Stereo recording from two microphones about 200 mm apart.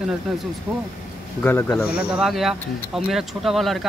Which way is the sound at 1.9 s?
5° right (ahead or behind).